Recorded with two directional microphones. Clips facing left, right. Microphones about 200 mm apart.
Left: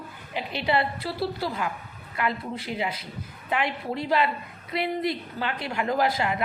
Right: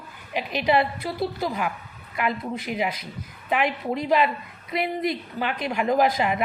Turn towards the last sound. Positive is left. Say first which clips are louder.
# right 3 dB
turn(degrees=-20)  # may be behind; listen again after turning